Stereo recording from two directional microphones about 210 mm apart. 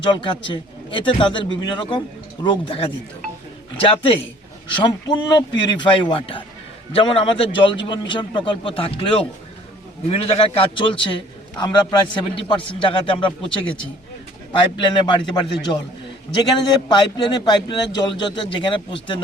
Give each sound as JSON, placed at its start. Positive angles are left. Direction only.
{"t": 0.1, "sound": "a man's voice", "side_deg": 25}